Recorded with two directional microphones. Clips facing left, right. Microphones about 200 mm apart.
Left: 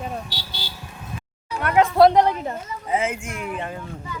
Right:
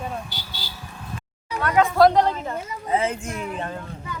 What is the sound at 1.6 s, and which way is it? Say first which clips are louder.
Speech: left 2 dB; 20° left (ahead or behind).